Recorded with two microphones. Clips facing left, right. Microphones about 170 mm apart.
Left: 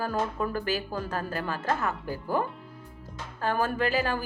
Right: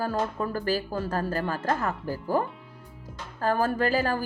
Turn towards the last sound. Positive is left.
turn(degrees=-35)  # may be behind; listen again after turning